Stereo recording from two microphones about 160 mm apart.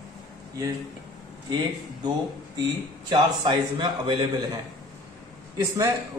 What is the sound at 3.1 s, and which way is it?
A man's voice, 25° right (ahead or behind).